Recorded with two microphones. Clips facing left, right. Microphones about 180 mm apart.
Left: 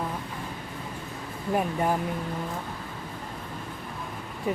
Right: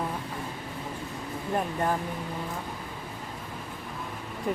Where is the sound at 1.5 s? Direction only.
10° left (ahead or behind).